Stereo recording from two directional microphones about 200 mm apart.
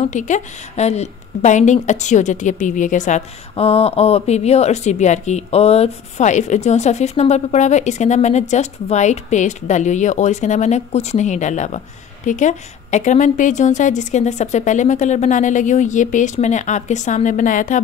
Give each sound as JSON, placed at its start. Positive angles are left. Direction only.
{"t": 0.0, "sound": "a woman's voice", "side_deg": 40}